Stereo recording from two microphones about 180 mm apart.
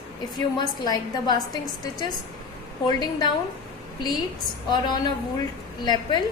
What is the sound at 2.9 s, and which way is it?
Speech, 20° left (ahead or behind).